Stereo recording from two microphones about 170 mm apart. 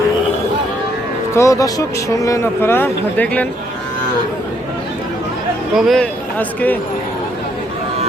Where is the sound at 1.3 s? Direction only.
20° left (ahead or behind).